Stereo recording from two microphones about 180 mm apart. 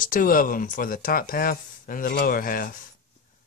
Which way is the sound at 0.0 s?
50° left (ahead or behind).